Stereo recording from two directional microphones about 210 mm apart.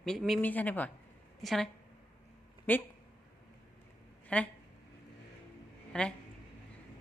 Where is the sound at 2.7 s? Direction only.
10° left (ahead or behind).